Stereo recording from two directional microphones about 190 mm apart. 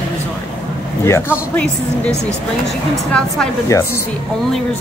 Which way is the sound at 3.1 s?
5° left (ahead or behind).